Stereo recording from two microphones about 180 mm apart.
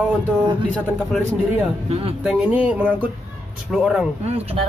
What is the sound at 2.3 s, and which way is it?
Speech, 5° right (ahead or behind).